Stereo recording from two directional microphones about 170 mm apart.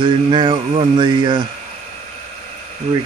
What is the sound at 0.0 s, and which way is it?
Speech, 25° right (ahead or behind).